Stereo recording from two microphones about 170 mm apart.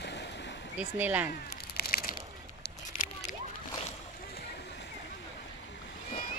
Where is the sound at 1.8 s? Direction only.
65° left (ahead or behind).